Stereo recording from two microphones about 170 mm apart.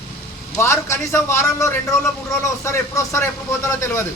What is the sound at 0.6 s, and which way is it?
Speech, 15° left (ahead or behind).